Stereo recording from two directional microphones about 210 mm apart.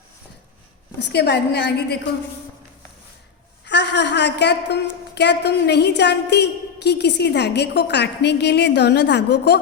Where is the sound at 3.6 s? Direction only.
55° left (ahead or behind).